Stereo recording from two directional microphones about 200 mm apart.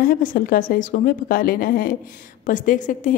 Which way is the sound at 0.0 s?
45° left (ahead or behind).